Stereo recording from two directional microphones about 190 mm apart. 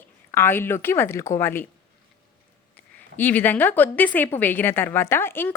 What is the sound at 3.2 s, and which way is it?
A woman's voice, 10° left (ahead or behind).